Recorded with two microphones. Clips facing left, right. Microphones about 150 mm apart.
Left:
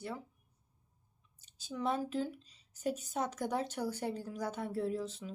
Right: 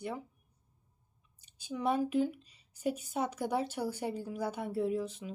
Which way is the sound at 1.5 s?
10° right (ahead or behind).